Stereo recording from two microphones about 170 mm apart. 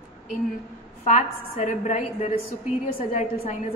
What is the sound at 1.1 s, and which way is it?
A woman's voice, 45° left (ahead or behind).